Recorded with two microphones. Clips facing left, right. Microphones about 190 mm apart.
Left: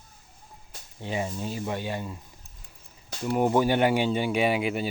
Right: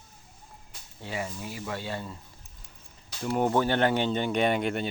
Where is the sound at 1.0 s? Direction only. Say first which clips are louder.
Left 4 dB; 20° left (ahead or behind).